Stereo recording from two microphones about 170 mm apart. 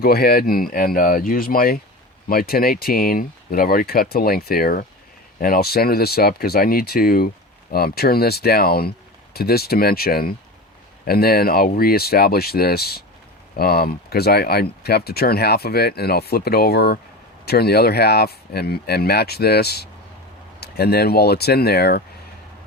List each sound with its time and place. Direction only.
0.0 s speech: 65° left (ahead or behind)